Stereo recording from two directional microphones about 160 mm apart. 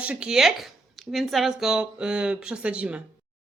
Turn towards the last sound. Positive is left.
turn(degrees=-10)  # may be behind; listen again after turning